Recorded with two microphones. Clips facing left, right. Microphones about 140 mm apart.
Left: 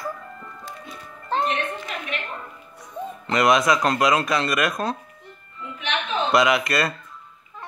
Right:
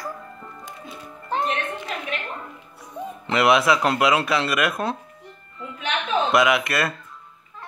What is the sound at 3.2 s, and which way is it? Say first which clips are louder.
Speech: right 1 dB; 10° right (ahead or behind).